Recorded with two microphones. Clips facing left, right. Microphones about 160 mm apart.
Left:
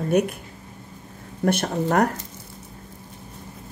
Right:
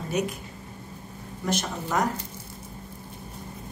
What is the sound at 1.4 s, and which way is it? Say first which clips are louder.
Speech: left 7 dB; 60° left (ahead or behind).